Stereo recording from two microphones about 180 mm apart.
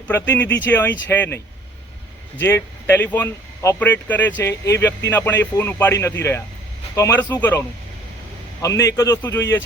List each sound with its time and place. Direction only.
0.1 s speech: 10° left (ahead or behind)
2.4 s speech: 10° left (ahead or behind)
8.6 s speech: 15° left (ahead or behind)